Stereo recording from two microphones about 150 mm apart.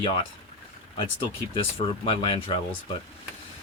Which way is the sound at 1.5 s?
35° left (ahead or behind).